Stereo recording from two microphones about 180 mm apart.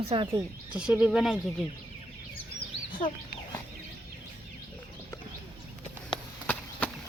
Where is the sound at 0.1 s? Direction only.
30° right (ahead or behind).